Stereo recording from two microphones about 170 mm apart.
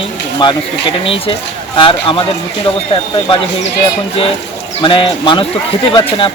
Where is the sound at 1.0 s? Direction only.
30° left (ahead or behind).